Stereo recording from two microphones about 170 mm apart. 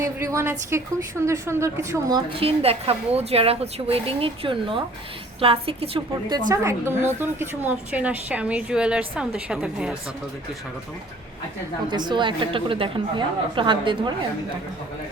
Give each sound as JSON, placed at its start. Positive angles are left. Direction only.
{"t": 0.0, "sound": "a woman's voice", "side_deg": -15}
{"t": 2.4, "sound": "a woman's voice", "side_deg": -35}
{"t": 6.5, "sound": "a woman's voice", "side_deg": -15}
{"t": 11.9, "sound": "a woman's voice", "side_deg": -25}